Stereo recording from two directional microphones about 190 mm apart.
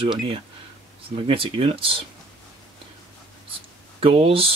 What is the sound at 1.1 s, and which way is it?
Speech, 30° right (ahead or behind).